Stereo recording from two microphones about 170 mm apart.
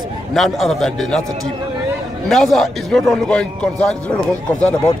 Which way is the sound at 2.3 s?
Centre (ahead or behind).